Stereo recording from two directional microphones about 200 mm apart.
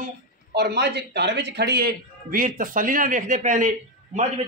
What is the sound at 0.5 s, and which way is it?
A man's voice, 55° right (ahead or behind).